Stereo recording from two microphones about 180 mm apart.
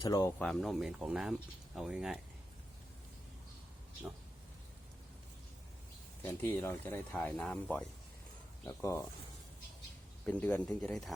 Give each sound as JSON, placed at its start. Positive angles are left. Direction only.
{"t": 0.0, "sound": "speech", "side_deg": 20}
{"t": 0.3, "sound": "speech", "side_deg": 0}
{"t": 6.2, "sound": "speech", "side_deg": 15}
{"t": 8.6, "sound": "speech", "side_deg": 15}
{"t": 10.2, "sound": "speech", "side_deg": 10}